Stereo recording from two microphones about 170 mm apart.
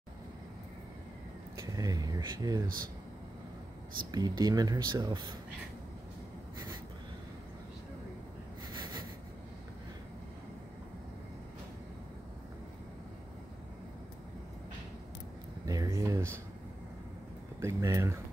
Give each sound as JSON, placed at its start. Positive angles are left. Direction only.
{"t": 1.6, "sound": "speech", "side_deg": -20}
{"t": 4.1, "sound": "speech", "side_deg": -25}
{"t": 15.6, "sound": "a sound", "side_deg": -20}
{"t": 17.6, "sound": "speech", "side_deg": -15}